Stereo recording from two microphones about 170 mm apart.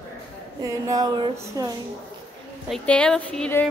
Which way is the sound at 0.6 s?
20° right (ahead or behind).